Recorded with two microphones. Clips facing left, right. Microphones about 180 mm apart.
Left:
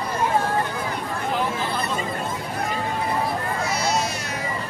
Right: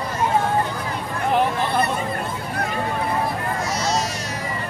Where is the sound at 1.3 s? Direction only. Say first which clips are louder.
Right 7 dB; 60° right (ahead or behind).